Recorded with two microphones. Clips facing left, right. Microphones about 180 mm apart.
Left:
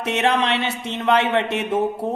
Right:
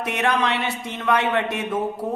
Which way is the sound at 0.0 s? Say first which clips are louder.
Left 2 dB; 25° left (ahead or behind).